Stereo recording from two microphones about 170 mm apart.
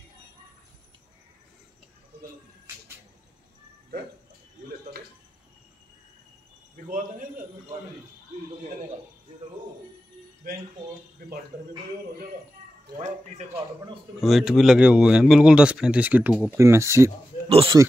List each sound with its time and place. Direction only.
6.9 s a sound: 50° right (ahead or behind)
14.2 s speech: centre (ahead or behind)
17.5 s speech: 35° right (ahead or behind)